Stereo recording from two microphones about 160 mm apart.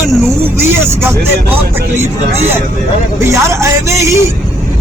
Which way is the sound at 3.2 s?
20° right (ahead or behind).